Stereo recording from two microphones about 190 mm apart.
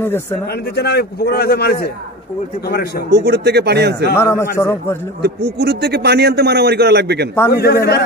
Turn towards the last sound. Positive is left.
turn(degrees=55)  # may be behind; listen again after turning